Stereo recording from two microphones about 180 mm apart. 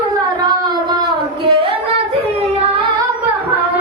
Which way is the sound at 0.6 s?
25° right (ahead or behind).